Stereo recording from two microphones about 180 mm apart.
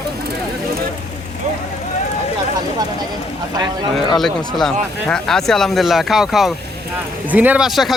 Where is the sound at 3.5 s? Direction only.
20° right (ahead or behind).